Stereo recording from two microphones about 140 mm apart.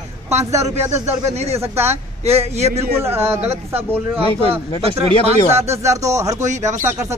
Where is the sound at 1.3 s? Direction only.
50° right (ahead or behind).